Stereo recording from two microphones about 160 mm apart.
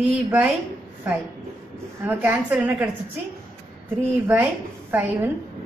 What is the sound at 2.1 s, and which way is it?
Speech, 10° right (ahead or behind).